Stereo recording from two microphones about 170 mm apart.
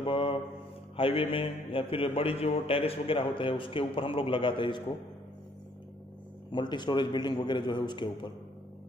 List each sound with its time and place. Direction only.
0.0 s a sound: 30° left (ahead or behind)
0.9 s speech: 35° left (ahead or behind)
6.5 s a man's voice: 25° left (ahead or behind)